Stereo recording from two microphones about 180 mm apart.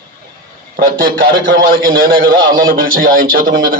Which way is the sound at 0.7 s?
55° right (ahead or behind).